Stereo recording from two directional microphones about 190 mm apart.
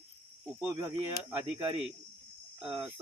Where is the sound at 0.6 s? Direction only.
15° right (ahead or behind).